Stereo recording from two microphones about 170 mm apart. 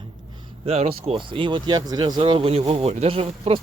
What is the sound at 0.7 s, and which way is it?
A man's voice, 35° right (ahead or behind).